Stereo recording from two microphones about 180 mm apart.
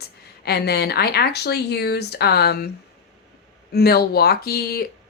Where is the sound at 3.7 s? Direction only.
60° left (ahead or behind).